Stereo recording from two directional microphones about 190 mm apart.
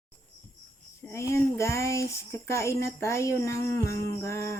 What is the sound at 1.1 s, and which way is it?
Speech, 15° left (ahead or behind).